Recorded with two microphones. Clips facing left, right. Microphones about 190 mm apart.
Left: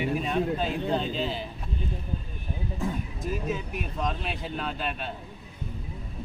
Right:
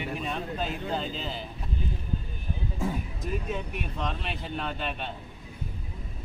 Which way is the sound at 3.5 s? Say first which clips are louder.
Left 1 dB; centre (ahead or behind).